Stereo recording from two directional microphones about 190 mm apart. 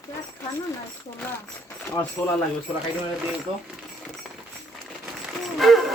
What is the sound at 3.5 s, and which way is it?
Speech, 30° right (ahead or behind).